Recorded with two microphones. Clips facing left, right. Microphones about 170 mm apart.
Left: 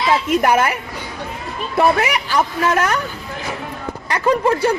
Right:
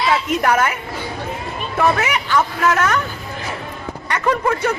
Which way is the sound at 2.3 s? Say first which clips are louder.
Right 1 dB; 30° left (ahead or behind).